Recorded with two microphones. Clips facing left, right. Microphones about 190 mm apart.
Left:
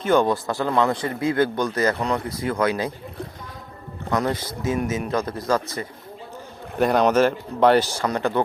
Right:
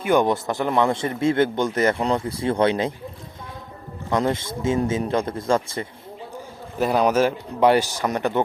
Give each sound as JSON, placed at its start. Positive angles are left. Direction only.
{"t": 0.0, "sound": "a man's voice", "side_deg": -15}
{"t": 4.1, "sound": "a man's voice", "side_deg": -25}
{"t": 6.7, "sound": "a man's voice", "side_deg": -5}